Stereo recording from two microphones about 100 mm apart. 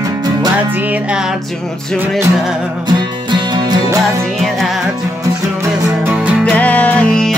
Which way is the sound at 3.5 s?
45° right (ahead or behind).